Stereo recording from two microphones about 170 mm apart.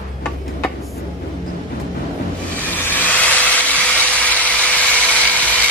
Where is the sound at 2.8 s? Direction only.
10° left (ahead or behind).